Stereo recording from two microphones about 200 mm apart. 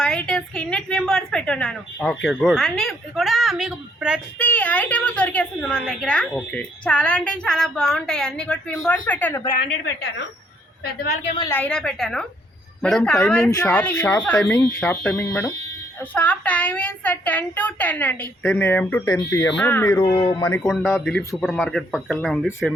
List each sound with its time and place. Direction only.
0.0 s a woman's voice: 5° left (ahead or behind)
4.4 s a woman's voice: 5° left (ahead or behind)
11.0 s a woman's voice: 45° left (ahead or behind)
11.3 s a woman's voice: 10° left (ahead or behind)
20.1 s speech: 30° left (ahead or behind)
20.4 s a woman's voice: 10° left (ahead or behind)